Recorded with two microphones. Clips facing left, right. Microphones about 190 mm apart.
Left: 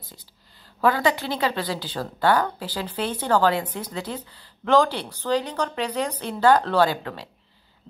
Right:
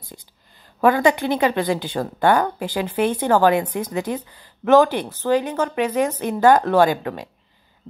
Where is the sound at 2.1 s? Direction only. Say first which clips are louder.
Right 3 dB; 20° right (ahead or behind).